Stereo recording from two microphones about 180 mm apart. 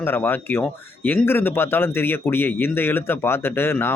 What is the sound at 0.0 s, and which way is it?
Speech, 10° left (ahead or behind).